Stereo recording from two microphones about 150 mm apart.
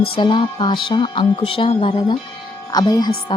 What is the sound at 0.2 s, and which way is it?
Speech, 30° left (ahead or behind).